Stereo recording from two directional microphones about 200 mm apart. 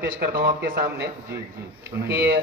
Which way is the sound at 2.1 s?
55° right (ahead or behind).